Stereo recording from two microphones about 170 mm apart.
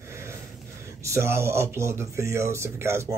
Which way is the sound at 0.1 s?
15° right (ahead or behind).